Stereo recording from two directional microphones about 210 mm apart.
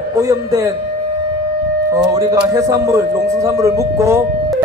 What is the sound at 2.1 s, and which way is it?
A man's voice, 15° right (ahead or behind).